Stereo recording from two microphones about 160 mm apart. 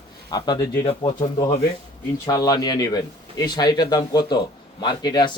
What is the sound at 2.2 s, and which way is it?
Speech, 25° left (ahead or behind).